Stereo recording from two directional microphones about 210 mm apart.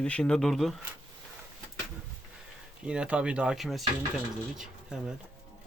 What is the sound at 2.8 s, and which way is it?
Speech, 5° right (ahead or behind).